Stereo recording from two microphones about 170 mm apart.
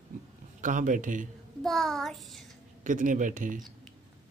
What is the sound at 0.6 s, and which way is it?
Speech, 50° right (ahead or behind).